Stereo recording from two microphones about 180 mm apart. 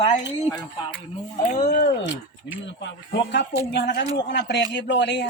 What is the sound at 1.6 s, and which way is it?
Speech, 55° left (ahead or behind).